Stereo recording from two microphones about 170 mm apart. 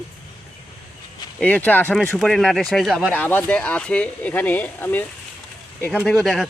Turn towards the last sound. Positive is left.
turn(degrees=5)  # may be behind; listen again after turning